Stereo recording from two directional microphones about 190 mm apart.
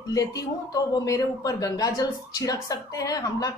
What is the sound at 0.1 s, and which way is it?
A woman's voice, 20° left (ahead or behind).